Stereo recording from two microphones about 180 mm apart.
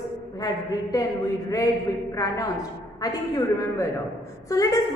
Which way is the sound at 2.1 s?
20° left (ahead or behind).